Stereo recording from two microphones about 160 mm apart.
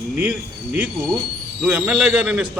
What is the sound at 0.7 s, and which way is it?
A man's voice, 10° right (ahead or behind).